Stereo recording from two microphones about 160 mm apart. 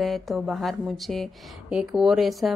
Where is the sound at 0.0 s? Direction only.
Centre (ahead or behind).